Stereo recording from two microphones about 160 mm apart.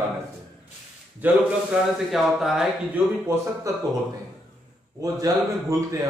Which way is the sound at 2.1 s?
Centre (ahead or behind).